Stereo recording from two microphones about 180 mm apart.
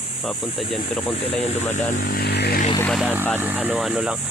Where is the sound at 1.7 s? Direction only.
45° left (ahead or behind); by 2.6 s 65° left (ahead or behind).